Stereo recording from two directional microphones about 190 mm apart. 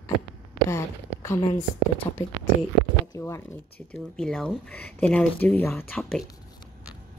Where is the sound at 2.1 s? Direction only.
30° left (ahead or behind).